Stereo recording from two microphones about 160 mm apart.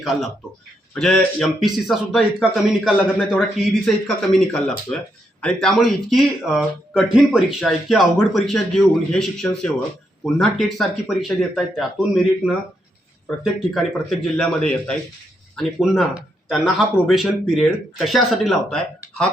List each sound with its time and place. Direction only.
0.9 s speech: 5° left (ahead or behind)
15.5 s speech: centre (ahead or behind)